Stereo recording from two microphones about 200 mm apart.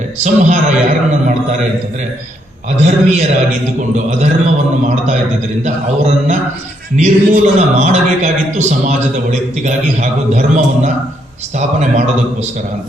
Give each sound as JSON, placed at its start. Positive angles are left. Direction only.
{"t": 0.2, "sound": "a man's voice", "side_deg": -35}
{"t": 2.6, "sound": "a man's voice", "side_deg": -35}